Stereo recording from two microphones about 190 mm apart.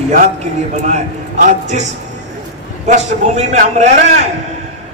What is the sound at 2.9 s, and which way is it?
A man's voice, 40° right (ahead or behind).